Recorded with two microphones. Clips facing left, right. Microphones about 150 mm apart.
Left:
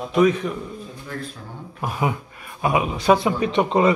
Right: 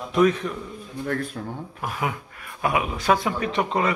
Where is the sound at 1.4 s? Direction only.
50° right (ahead or behind).